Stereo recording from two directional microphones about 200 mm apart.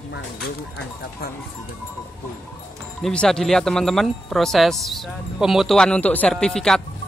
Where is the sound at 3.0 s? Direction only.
5° left (ahead or behind).